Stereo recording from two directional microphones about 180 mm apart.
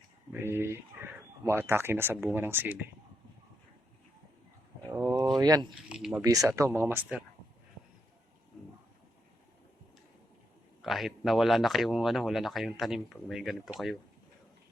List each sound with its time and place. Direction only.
0.3 s speech: 15° right (ahead or behind)
4.9 s speech: 10° right (ahead or behind)
5.4 s speech: 20° right (ahead or behind)
5.9 s speech: 5° right (ahead or behind)
6.2 s speech: 20° right (ahead or behind)
10.8 s speech: centre (ahead or behind)